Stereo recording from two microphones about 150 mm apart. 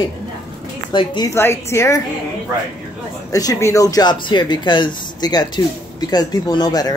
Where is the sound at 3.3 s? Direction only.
20° left (ahead or behind).